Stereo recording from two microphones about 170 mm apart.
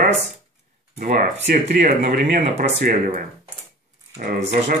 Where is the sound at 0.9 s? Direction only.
50° right (ahead or behind).